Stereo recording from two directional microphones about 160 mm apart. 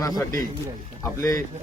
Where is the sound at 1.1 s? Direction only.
20° left (ahead or behind).